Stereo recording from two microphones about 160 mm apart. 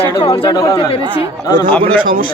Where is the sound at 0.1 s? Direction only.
30° left (ahead or behind).